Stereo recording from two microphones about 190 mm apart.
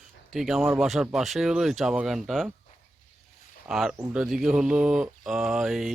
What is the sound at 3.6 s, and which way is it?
Speech, centre (ahead or behind).